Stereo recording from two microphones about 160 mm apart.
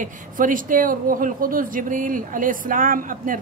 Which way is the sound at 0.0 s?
55° right (ahead or behind).